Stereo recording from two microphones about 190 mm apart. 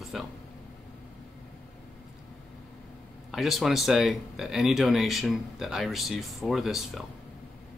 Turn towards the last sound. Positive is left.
turn(degrees=0)  # may be behind; listen again after turning